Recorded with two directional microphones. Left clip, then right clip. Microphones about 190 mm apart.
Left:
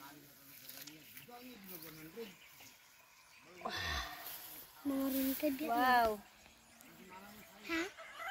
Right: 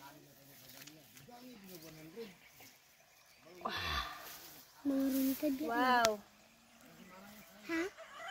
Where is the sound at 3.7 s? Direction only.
25° right (ahead or behind).